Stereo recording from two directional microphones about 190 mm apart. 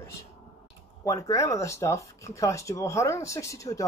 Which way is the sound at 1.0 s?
15° left (ahead or behind).